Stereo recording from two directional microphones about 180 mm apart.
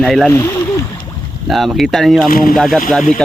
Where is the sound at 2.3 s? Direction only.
55° left (ahead or behind).